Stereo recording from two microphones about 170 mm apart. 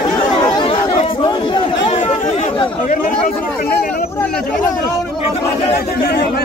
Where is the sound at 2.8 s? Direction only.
50° left (ahead or behind).